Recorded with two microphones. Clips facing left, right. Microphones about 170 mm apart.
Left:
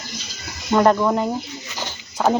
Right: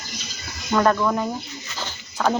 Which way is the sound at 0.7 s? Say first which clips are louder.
Left 3 dB; 20° left (ahead or behind).